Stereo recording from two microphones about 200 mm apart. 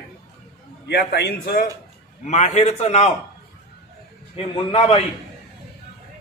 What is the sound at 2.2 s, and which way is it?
Speech, 35° left (ahead or behind).